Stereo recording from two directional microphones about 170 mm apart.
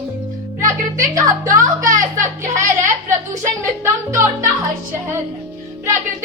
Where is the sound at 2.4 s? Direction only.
15° right (ahead or behind).